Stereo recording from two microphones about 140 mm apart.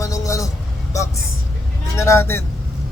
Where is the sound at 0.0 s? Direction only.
25° left (ahead or behind).